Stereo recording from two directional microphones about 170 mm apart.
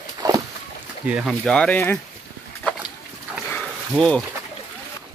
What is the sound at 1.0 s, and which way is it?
Speech, 5° right (ahead or behind).